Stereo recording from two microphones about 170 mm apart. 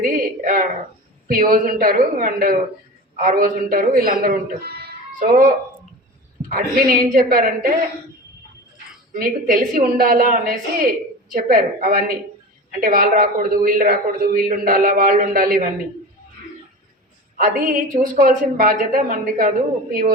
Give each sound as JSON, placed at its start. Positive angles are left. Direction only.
{"t": 0.0, "sound": "a woman's voice", "side_deg": -50}
{"t": 5.2, "sound": "speech", "side_deg": -50}
{"t": 6.5, "sound": "a man's voice", "side_deg": -60}
{"t": 9.1, "sound": "a man's voice", "side_deg": -55}
{"t": 17.3, "sound": "a man's voice", "side_deg": -55}